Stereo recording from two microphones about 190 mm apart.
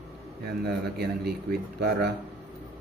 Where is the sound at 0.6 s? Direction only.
55° right (ahead or behind).